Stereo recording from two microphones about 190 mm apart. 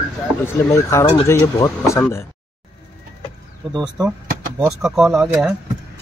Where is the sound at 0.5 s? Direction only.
15° left (ahead or behind).